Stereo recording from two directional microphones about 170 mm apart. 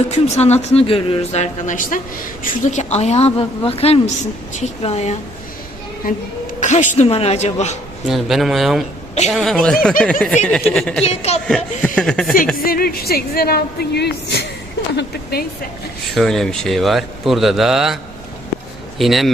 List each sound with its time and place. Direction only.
0.1 s speech: 40° left (ahead or behind)
6.6 s speech: 45° left (ahead or behind)
8.0 s a man's voice: centre (ahead or behind)
11.0 s speech: 40° left (ahead or behind)
11.4 s a man's voice: 5° left (ahead or behind)
12.5 s a woman's voice: 60° left (ahead or behind)
16.1 s a man's voice: centre (ahead or behind)